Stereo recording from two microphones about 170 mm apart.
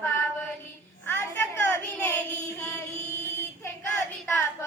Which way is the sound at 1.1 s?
15° left (ahead or behind).